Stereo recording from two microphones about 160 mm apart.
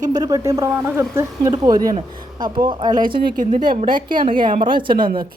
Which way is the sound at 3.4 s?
55° right (ahead or behind).